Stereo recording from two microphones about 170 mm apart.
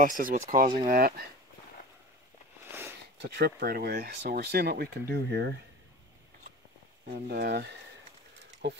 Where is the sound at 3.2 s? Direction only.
70° right (ahead or behind).